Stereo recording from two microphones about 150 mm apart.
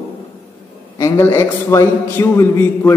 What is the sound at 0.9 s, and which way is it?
A man's voice, 15° left (ahead or behind).